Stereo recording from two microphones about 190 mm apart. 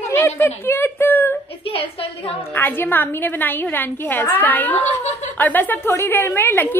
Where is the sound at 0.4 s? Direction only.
10° left (ahead or behind).